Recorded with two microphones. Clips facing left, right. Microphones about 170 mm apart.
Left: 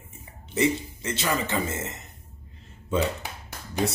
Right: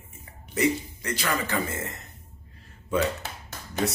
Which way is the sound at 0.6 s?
25° left (ahead or behind).